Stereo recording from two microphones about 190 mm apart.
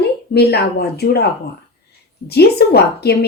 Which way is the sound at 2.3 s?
55° left (ahead or behind).